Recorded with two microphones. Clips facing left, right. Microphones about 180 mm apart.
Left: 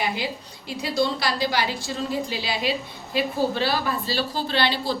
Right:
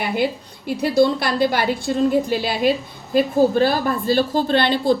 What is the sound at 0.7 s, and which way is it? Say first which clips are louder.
A woman's voice: right 8 dB; 55° right (ahead or behind).